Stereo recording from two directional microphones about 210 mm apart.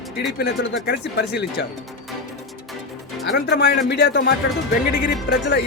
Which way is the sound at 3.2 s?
50° left (ahead or behind).